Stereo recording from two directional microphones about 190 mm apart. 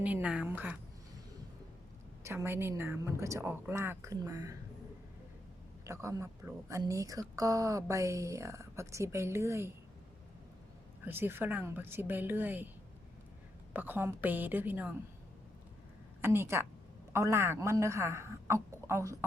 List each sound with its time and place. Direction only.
0.0 s speech: 5° right (ahead or behind)
2.2 s speech: 15° right (ahead or behind)
5.8 s speech: 15° right (ahead or behind)
11.0 s speech: 10° right (ahead or behind)
13.7 s speech: 10° right (ahead or behind)
16.2 s speech: 15° right (ahead or behind)